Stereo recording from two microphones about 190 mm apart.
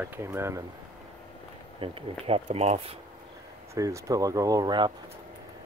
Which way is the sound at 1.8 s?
30° right (ahead or behind).